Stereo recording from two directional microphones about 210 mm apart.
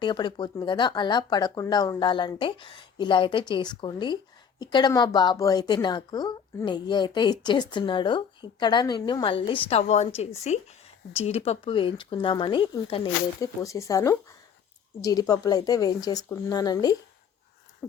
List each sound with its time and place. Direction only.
0.0 s a woman's voice: 20° left (ahead or behind)